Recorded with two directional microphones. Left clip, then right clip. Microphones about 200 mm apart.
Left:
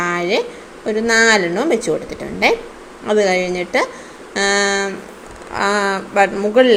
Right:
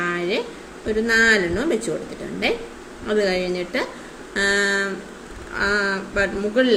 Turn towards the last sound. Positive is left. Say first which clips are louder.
# left 7 dB
turn(degrees=15)  # may be behind; listen again after turning